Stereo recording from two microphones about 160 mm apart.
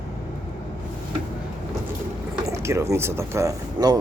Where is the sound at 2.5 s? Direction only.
20° right (ahead or behind).